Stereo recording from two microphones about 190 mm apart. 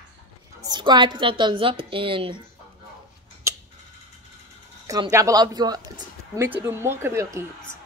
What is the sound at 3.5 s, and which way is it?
Tick-tock, 15° right (ahead or behind).